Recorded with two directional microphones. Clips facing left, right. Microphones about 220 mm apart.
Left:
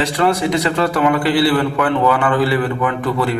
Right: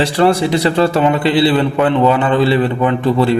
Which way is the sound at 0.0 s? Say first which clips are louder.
Right 4 dB; 30° right (ahead or behind).